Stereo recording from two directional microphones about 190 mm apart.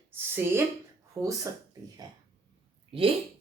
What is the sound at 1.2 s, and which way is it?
Speech, 15° right (ahead or behind).